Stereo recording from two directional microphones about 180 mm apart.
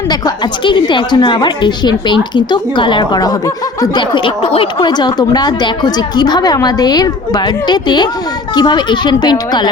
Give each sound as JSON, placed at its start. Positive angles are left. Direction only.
{"t": 0.1, "sound": "a woman's voice", "side_deg": 25}